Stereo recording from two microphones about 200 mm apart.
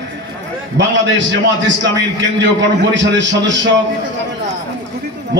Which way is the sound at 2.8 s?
65° right (ahead or behind).